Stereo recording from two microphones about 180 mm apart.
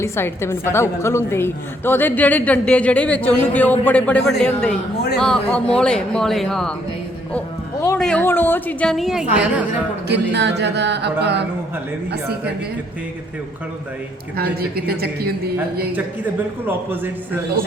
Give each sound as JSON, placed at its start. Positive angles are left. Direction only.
{"t": 0.0, "sound": "a woman's voice", "side_deg": 15}
{"t": 10.1, "sound": "speech", "side_deg": -70}
{"t": 14.3, "sound": "a woman's voice", "side_deg": -60}
{"t": 16.6, "sound": "a man's voice", "side_deg": -10}